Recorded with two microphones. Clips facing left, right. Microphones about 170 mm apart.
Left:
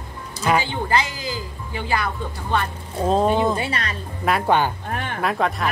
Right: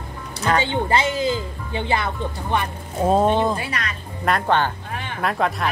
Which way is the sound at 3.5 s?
25° left (ahead or behind).